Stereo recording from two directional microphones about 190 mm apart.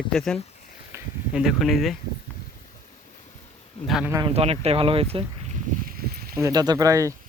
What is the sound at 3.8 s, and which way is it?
Speech, centre (ahead or behind).